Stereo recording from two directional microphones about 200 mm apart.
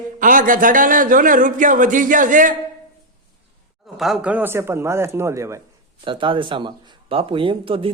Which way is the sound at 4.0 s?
5° right (ahead or behind).